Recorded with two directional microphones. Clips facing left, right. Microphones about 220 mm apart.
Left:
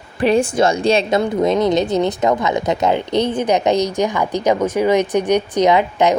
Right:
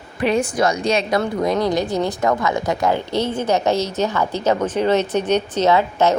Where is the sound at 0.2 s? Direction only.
30° left (ahead or behind).